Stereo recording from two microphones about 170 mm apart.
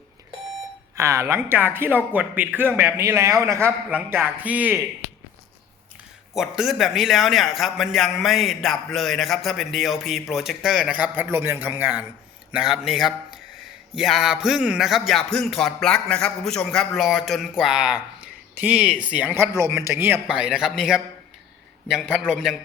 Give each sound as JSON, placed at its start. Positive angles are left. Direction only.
{"t": 0.9, "sound": "speech", "side_deg": -15}
{"t": 6.3, "sound": "a man's voice", "side_deg": 0}